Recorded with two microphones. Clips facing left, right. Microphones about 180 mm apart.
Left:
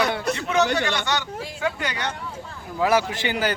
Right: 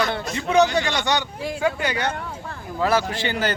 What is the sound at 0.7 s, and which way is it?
Speech, 15° right (ahead or behind).